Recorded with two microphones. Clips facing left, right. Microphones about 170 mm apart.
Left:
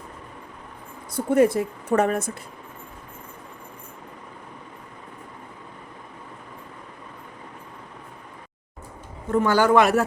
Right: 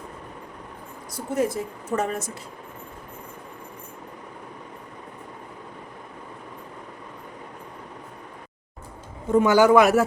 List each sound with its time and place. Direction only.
1.1 s speech: 60° left (ahead or behind)
9.3 s speech: 15° right (ahead or behind)